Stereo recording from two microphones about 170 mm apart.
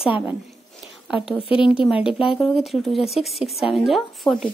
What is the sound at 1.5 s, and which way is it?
Speech, 30° left (ahead or behind).